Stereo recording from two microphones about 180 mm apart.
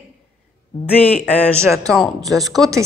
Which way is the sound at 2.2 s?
20° right (ahead or behind).